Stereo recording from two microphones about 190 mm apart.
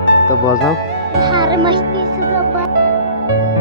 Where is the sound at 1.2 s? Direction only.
25° right (ahead or behind).